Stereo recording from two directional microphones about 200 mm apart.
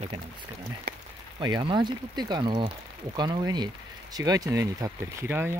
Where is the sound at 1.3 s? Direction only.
20° right (ahead or behind).